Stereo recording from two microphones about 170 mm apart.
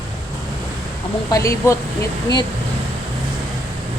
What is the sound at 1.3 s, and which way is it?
Speech, 20° left (ahead or behind).